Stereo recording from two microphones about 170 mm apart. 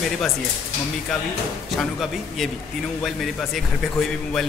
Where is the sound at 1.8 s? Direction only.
Centre (ahead or behind).